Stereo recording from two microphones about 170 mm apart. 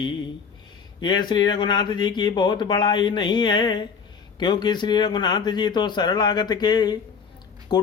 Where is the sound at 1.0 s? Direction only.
25° left (ahead or behind).